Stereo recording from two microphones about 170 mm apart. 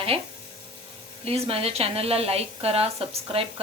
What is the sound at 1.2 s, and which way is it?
A woman's voice, 35° right (ahead or behind).